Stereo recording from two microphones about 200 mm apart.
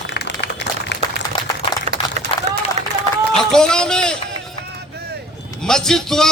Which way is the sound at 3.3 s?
5° left (ahead or behind).